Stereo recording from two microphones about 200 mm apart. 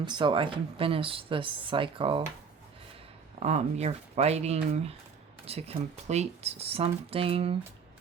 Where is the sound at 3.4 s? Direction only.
35° right (ahead or behind).